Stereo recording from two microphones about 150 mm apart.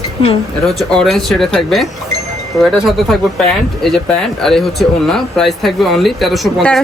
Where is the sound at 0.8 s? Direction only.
Centre (ahead or behind).